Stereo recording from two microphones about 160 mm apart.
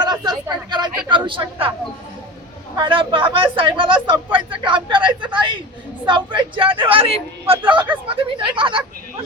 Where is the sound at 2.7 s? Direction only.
30° right (ahead or behind).